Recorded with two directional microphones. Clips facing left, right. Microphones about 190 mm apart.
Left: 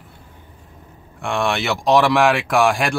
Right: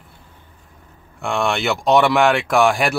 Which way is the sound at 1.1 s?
Centre (ahead or behind).